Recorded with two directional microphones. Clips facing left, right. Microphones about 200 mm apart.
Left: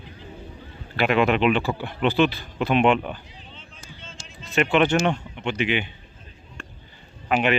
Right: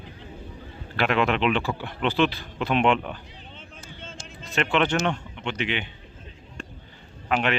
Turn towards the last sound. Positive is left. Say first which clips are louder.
# left 3 dB
turn(degrees=5)  # may be behind; listen again after turning